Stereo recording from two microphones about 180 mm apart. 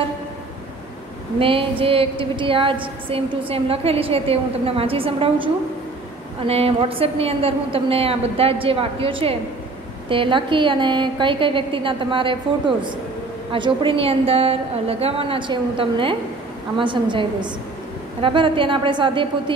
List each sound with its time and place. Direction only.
1.4 s a woman's voice: 30° right (ahead or behind)